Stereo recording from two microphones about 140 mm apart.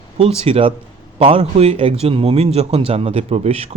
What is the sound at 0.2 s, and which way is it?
A man's voice, 45° right (ahead or behind).